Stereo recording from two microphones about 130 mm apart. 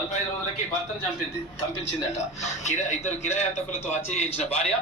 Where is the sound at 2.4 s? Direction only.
65° left (ahead or behind).